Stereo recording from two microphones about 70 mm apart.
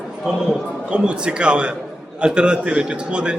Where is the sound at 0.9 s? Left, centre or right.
Centre.